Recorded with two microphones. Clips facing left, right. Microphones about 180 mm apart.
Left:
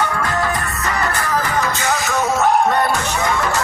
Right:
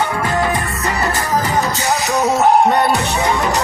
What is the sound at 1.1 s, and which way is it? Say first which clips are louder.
Music: right 2 dB; 20° right (ahead or behind).